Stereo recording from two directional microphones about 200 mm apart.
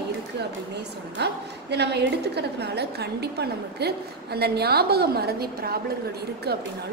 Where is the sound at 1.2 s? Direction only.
55° right (ahead or behind).